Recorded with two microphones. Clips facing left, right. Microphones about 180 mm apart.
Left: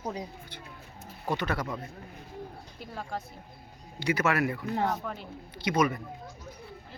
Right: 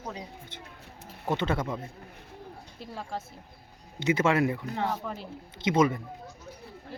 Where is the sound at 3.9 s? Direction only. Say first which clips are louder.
Right 3 dB; 25° right (ahead or behind).